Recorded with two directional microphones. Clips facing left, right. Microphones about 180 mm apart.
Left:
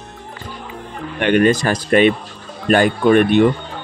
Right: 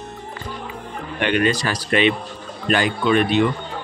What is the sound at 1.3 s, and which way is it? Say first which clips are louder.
Speech: left 7 dB; 50° left (ahead or behind).